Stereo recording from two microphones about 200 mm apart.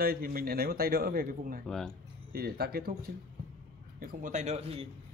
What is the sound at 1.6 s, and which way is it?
Speech, 5° left (ahead or behind).